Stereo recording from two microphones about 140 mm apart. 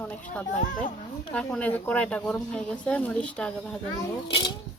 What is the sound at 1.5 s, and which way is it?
Speech, 10° left (ahead or behind).